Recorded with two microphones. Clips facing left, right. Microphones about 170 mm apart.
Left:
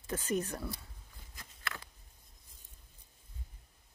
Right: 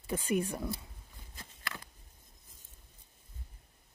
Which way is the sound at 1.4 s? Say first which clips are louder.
Right 3 dB; 30° right (ahead or behind).